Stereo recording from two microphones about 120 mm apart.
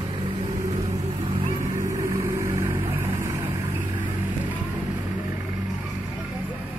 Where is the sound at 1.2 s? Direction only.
50° right (ahead or behind).